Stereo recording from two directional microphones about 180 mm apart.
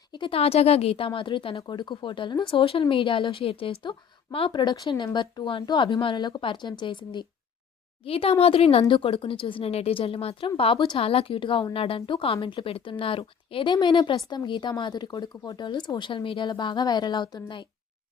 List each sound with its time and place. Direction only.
0.1 s speech: 30° left (ahead or behind)